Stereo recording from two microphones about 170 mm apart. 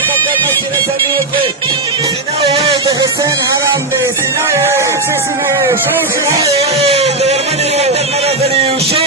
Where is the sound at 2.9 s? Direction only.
20° right (ahead or behind).